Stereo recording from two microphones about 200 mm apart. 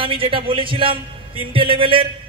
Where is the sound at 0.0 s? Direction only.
25° right (ahead or behind).